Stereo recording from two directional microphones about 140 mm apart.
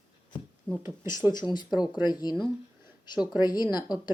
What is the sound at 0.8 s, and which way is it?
Speech, 20° right (ahead or behind).